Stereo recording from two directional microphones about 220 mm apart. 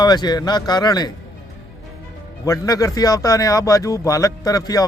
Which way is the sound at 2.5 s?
15° left (ahead or behind).